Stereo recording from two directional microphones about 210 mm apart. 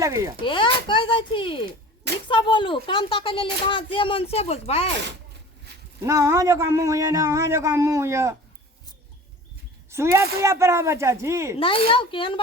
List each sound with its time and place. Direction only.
0.0 s speech: 15° right (ahead or behind)
0.4 s speech: 25° left (ahead or behind)
6.0 s speech: 15° right (ahead or behind)
9.9 s speech: 10° right (ahead or behind)
11.5 s speech: 25° left (ahead or behind)